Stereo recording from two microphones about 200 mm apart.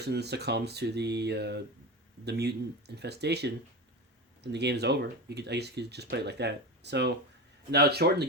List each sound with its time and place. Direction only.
0.0 s speech: 55° right (ahead or behind)